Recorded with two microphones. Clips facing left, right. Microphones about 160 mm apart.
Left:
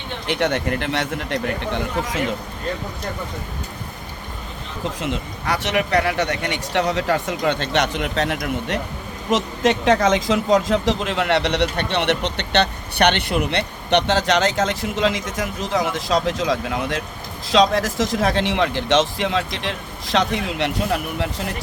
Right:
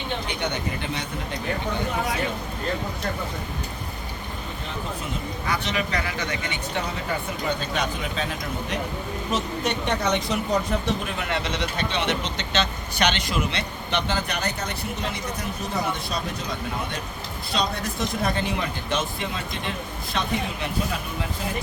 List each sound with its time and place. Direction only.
0.3 s speech: 90° left
5.5 s speech: 70° left (ahead or behind)